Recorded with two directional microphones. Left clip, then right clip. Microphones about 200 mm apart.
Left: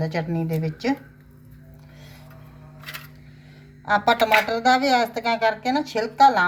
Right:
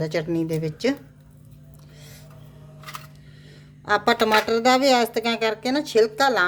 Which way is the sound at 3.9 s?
50° right (ahead or behind).